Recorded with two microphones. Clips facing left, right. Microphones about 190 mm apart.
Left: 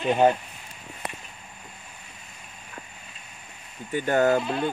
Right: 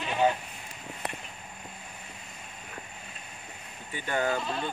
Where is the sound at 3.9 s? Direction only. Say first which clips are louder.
Left 8 dB; 45° left (ahead or behind).